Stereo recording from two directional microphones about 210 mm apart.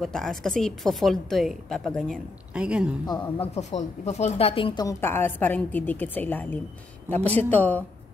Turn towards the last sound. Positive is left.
turn(degrees=10)  # may be behind; listen again after turning